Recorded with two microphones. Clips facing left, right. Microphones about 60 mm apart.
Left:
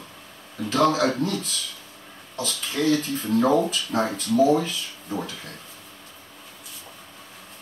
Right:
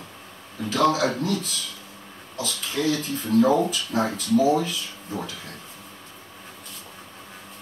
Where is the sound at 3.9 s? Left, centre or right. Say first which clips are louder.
Even; left.